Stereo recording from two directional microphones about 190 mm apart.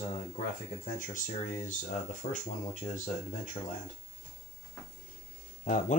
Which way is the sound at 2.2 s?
40° left (ahead or behind).